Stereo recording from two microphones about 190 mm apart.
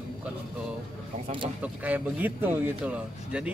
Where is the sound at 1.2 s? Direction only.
25° right (ahead or behind).